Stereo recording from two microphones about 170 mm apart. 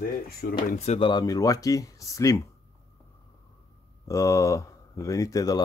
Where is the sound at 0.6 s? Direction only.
40° left (ahead or behind).